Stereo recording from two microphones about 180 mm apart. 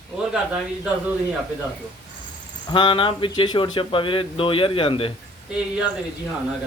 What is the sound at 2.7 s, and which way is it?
Speech, 25° left (ahead or behind).